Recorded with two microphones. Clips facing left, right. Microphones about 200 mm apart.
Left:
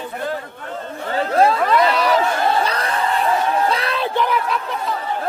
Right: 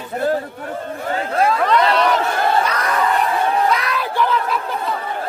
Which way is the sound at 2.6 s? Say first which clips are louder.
Right 2 dB; 30° left (ahead or behind).